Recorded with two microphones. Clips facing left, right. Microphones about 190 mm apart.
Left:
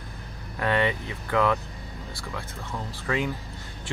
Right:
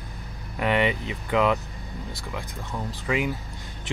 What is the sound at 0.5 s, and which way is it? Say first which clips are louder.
Speech: right 2 dB; 15° right (ahead or behind).